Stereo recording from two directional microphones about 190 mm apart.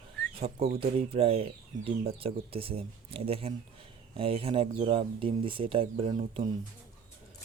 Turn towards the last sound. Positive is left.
turn(degrees=-30)  # may be behind; listen again after turning